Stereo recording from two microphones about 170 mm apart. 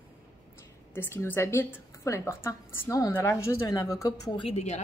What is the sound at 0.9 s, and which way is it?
A woman's voice, 15° left (ahead or behind).